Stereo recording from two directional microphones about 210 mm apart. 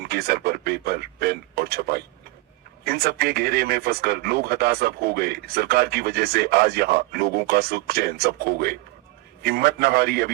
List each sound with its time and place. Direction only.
0.0 s speech: 50° right (ahead or behind)